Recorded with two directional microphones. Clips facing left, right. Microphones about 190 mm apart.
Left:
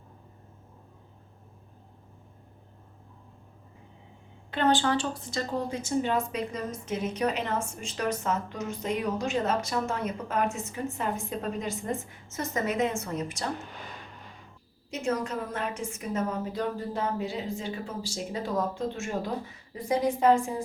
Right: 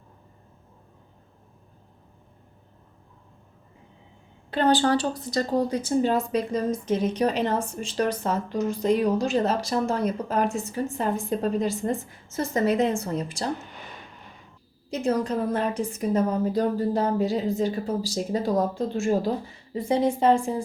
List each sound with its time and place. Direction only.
4.5 s a woman's voice: 35° right (ahead or behind)
14.8 s a woman's voice: 35° right (ahead or behind)